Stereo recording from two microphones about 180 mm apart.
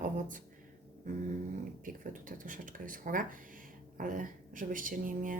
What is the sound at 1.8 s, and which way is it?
Speech, 45° right (ahead or behind).